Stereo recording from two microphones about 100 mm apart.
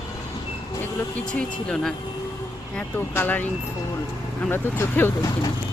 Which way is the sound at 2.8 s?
20° left (ahead or behind).